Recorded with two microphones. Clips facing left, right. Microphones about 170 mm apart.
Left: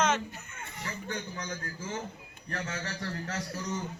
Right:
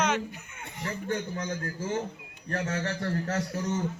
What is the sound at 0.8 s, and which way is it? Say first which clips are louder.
A man's voice: right 6 dB; 50° right (ahead or behind).